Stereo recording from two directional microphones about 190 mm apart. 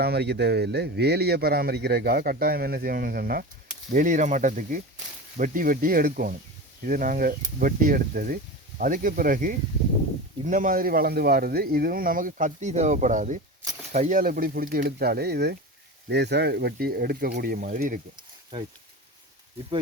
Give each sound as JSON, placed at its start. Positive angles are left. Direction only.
{"t": 0.0, "sound": "speech", "side_deg": -60}